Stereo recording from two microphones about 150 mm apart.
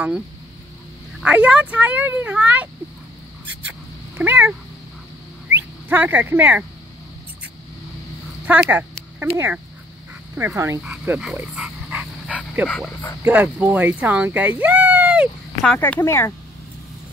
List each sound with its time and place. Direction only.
1.2 s speech: 10° right (ahead or behind)
4.2 s speech: 10° right (ahead or behind)
8.5 s speech: 15° right (ahead or behind)
12.6 s speech: 10° left (ahead or behind)
13.2 s speech: 15° right (ahead or behind)
15.6 s speech: 10° left (ahead or behind)